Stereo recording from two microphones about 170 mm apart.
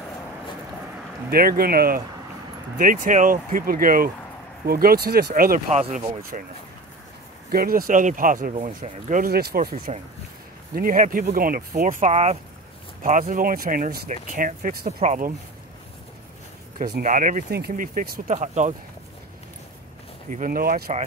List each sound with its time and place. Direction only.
1.3 s speech: 60° right (ahead or behind)
5.8 s speech: 40° right (ahead or behind)
7.5 s speech: 60° right (ahead or behind); by 9.2 s 45° right (ahead or behind)
9.2 s speech: 65° right (ahead or behind)
14.9 s speech: 40° right (ahead or behind)
17.0 s speech: 50° right (ahead or behind)
17.5 s speech: 70° right (ahead or behind)
18.3 s speech: 45° right (ahead or behind)
20.2 s speech: 50° right (ahead or behind)